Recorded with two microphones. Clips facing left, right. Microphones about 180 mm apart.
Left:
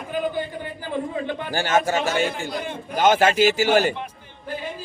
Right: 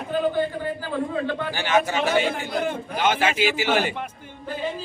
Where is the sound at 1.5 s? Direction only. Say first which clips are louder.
Left 2 dB; 45° left (ahead or behind).